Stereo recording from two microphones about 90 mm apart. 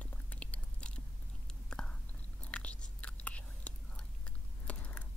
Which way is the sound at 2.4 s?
15° left (ahead or behind).